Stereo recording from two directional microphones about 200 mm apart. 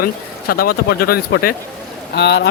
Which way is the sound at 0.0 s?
50° left (ahead or behind).